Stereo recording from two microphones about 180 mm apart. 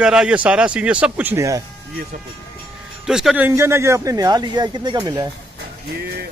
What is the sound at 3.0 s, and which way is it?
Speech, 5° right (ahead or behind).